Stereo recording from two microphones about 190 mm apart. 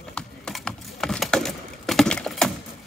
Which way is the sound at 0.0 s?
5° left (ahead or behind).